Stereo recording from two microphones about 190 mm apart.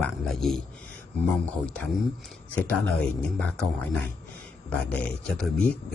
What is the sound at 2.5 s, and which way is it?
Speech, 5° left (ahead or behind).